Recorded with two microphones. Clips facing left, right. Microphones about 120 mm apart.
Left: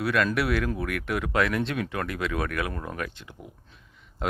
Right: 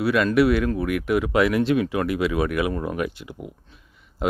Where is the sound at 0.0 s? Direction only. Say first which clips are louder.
Right 7 dB; centre (ahead or behind).